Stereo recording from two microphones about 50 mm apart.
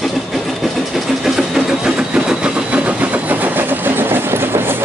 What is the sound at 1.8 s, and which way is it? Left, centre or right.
Train, centre.